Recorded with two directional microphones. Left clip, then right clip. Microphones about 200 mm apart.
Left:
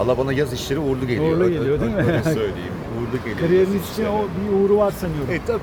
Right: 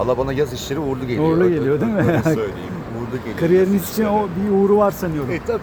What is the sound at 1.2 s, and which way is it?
Speech, 40° right (ahead or behind).